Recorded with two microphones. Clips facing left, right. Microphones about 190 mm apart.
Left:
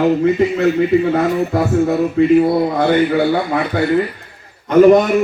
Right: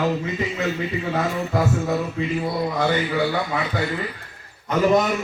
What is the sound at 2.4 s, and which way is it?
A man's voice, 55° left (ahead or behind).